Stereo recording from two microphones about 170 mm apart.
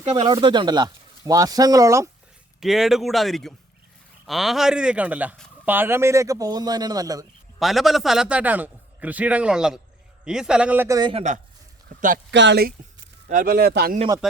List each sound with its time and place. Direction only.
0.0 s a man's voice: 25° right (ahead or behind)
2.6 s a man's voice: centre (ahead or behind); by 7.3 s 20° right (ahead or behind)
7.6 s a man's voice: centre (ahead or behind); by 11.1 s 20° right (ahead or behind)
11.1 s speech: 40° right (ahead or behind)
11.9 s speech: 50° right (ahead or behind)
12.3 s speech: 90° right
13.2 s speech: 50° right (ahead or behind); by 13.9 s 70° right (ahead or behind)